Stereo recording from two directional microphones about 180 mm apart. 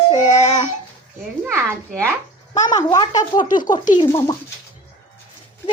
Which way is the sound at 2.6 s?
25° left (ahead or behind).